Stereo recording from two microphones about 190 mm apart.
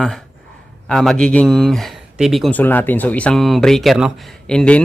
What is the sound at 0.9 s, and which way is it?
A man's voice, centre (ahead or behind).